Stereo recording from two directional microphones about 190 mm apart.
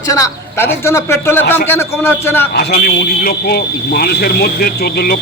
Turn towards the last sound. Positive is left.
turn(degrees=55)  # may be behind; listen again after turning